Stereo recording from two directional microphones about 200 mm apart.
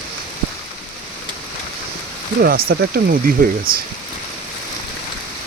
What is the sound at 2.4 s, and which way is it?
Speech, 50° right (ahead or behind).